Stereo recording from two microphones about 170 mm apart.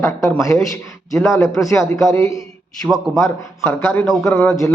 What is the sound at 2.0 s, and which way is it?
Speech, 20° left (ahead or behind).